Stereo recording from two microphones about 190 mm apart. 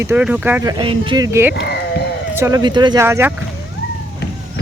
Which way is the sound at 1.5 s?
60° left (ahead or behind).